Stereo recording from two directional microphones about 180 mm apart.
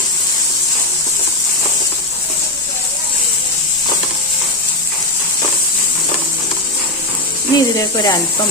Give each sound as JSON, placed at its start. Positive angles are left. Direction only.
{"t": 7.5, "sound": "speech", "side_deg": 20}